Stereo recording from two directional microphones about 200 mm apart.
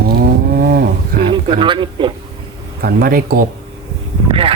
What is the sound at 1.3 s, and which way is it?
Speech, 25° right (ahead or behind).